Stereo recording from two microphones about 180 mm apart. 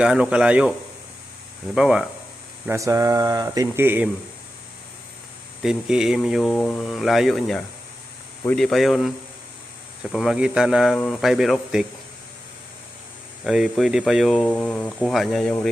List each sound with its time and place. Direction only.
0.0 s speech: 5° right (ahead or behind)
1.7 s speech: 5° right (ahead or behind)
2.6 s speech: 15° right (ahead or behind)
5.6 s speech: 5° right (ahead or behind)
13.4 s speech: centre (ahead or behind)